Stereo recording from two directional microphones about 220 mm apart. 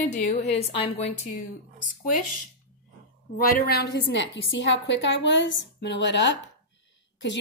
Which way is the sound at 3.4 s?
40° left (ahead or behind).